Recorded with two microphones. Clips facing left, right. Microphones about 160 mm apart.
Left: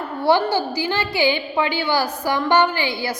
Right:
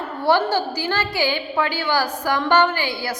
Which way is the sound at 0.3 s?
10° left (ahead or behind).